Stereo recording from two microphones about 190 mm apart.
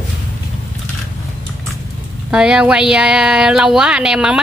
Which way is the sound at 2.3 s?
5° right (ahead or behind).